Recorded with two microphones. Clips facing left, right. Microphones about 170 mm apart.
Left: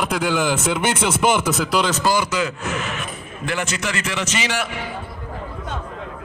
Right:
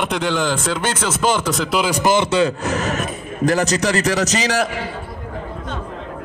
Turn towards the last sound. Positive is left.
turn(degrees=-40)  # may be behind; listen again after turning